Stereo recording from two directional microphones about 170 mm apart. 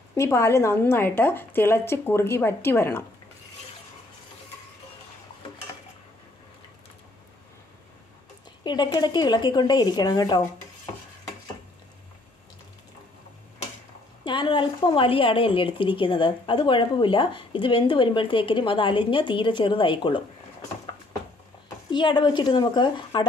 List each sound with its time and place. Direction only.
0.1 s a woman's voice: 15° left (ahead or behind)
8.6 s a woman's voice: 25° left (ahead or behind)
14.2 s a woman's voice: 25° left (ahead or behind)
21.9 s a woman's voice: 25° left (ahead or behind)